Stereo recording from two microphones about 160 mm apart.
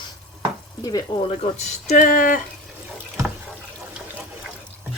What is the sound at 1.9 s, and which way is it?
Speech, 55° left (ahead or behind).